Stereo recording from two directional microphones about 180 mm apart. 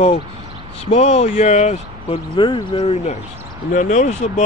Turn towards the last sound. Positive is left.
turn(degrees=40)  # may be behind; listen again after turning